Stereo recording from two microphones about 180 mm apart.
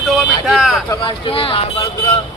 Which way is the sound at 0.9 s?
25° left (ahead or behind).